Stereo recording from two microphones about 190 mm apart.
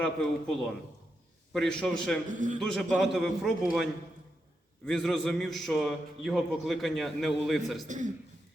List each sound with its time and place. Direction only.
0.0 s a man's voice: centre (ahead or behind)
1.5 s a man's voice: 5° left (ahead or behind)
4.9 s a man's voice: centre (ahead or behind)
7.9 s a man's voice: 40° right (ahead or behind)